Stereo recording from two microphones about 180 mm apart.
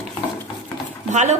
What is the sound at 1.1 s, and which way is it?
Speech, 40° right (ahead or behind).